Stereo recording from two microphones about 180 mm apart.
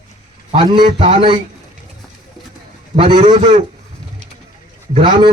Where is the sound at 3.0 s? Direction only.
30° right (ahead or behind).